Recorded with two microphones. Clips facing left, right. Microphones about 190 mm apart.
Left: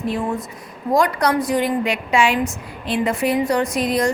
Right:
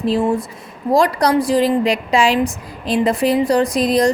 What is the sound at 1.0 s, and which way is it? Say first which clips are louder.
A woman's voice: right 3 dB; 35° right (ahead or behind).